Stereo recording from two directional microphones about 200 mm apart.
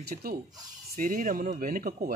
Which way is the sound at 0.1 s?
40° right (ahead or behind).